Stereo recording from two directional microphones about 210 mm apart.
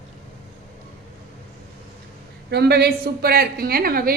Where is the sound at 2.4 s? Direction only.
50° right (ahead or behind).